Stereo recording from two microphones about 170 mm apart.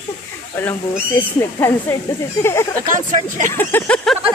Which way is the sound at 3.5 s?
10° left (ahead or behind).